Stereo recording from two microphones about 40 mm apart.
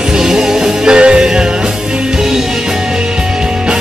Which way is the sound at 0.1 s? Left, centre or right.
Centre.